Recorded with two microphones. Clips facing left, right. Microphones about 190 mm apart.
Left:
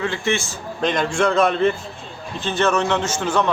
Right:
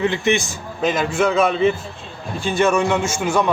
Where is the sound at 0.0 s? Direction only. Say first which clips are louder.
Right 4 dB; 20° right (ahead or behind).